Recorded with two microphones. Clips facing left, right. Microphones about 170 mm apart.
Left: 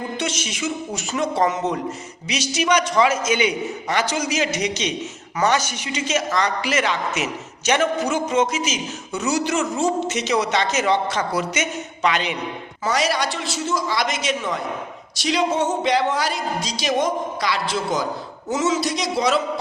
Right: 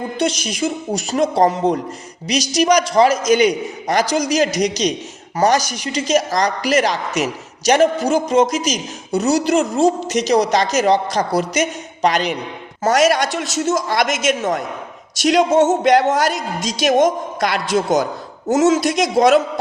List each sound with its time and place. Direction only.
0.2 s a man's voice: 35° right (ahead or behind)